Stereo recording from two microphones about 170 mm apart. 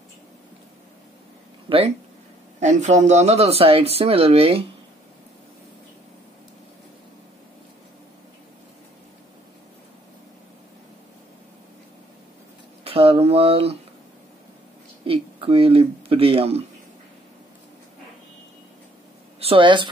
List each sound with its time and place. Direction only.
1.7 s a woman's voice: 30° right (ahead or behind)
2.6 s speech: 45° right (ahead or behind)
12.8 s a sound: 35° right (ahead or behind)
15.0 s speech: 35° right (ahead or behind)
19.4 s a woman's voice: 30° right (ahead or behind)